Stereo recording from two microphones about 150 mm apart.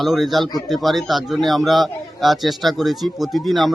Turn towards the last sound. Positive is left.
turn(degrees=0)  # may be behind; listen again after turning